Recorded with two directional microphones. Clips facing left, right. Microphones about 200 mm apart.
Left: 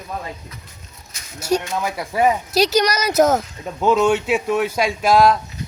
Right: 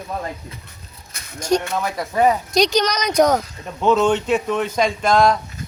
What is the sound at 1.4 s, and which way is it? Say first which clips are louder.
Speech: right 1 dB; 5° left (ahead or behind).